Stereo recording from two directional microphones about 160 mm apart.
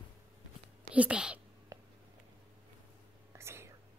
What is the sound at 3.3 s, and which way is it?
Whispering, 15° right (ahead or behind).